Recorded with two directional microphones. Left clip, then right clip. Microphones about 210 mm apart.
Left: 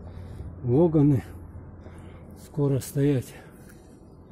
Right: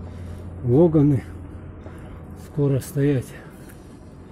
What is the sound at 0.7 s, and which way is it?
Speech, 10° left (ahead or behind).